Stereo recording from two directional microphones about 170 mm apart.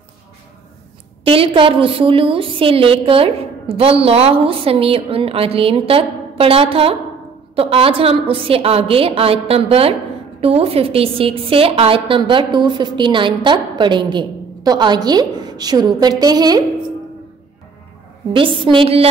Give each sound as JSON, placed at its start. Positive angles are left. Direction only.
{"t": 1.2, "sound": "a woman's voice", "side_deg": -35}
{"t": 18.3, "sound": "a woman's voice", "side_deg": -30}